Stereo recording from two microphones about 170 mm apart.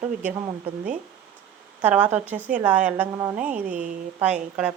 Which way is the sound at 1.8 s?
10° right (ahead or behind).